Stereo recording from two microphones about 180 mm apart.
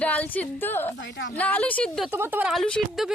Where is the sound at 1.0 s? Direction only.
90° left.